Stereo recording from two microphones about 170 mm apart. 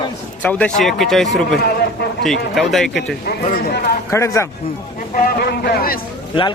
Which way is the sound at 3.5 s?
65° left (ahead or behind).